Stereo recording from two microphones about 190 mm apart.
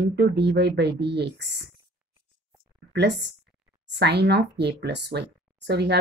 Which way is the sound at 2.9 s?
65° right (ahead or behind).